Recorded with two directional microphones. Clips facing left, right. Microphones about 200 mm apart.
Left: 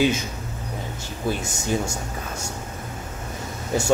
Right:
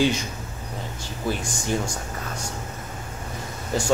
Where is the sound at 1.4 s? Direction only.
25° left (ahead or behind).